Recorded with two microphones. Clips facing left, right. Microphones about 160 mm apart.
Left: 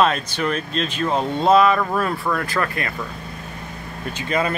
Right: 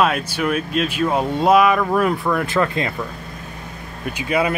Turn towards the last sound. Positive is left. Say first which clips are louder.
# right 2 dB
turn(degrees=-10)  # may be behind; listen again after turning